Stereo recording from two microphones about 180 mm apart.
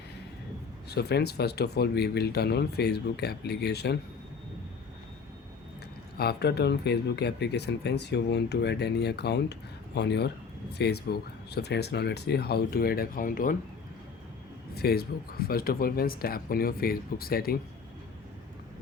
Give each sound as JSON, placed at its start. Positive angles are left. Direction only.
{"t": 0.9, "sound": "speech", "side_deg": 65}
{"t": 6.1, "sound": "speech", "side_deg": 65}
{"t": 14.8, "sound": "speech", "side_deg": 60}